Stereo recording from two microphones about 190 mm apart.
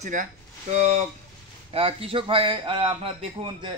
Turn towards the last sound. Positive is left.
turn(degrees=-25)  # may be behind; listen again after turning